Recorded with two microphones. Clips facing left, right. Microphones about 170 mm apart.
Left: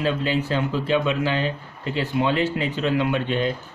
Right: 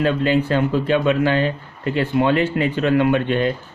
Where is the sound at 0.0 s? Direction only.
55° right (ahead or behind).